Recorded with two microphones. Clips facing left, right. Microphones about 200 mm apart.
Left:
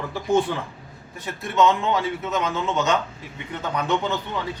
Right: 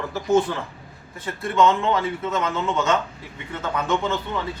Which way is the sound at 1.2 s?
15° left (ahead or behind).